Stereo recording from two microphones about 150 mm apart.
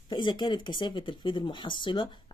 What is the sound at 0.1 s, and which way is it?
Speech, 30° left (ahead or behind).